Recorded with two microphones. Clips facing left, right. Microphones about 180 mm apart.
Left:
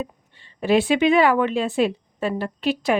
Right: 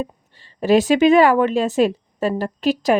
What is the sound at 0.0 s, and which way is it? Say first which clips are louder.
A woman's voice: right 3 dB; 40° right (ahead or behind).